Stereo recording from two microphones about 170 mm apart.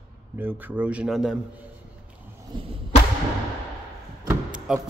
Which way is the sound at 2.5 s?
25° right (ahead or behind).